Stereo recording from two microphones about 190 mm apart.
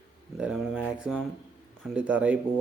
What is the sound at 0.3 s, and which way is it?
Speech, centre (ahead or behind).